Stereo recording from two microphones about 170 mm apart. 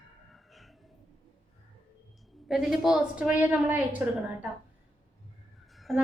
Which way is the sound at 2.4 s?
Centre (ahead or behind).